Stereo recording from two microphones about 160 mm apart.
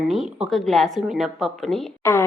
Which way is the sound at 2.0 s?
20° left (ahead or behind).